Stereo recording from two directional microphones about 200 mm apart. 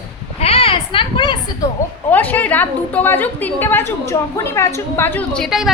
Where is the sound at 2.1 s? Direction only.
10° left (ahead or behind).